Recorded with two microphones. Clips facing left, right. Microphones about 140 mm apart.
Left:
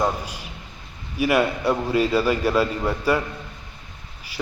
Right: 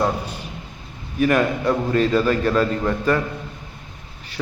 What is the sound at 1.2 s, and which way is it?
A man's voice, 10° left (ahead or behind).